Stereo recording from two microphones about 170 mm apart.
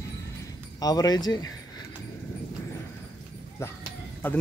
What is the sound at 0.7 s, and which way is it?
Speech, 20° left (ahead or behind).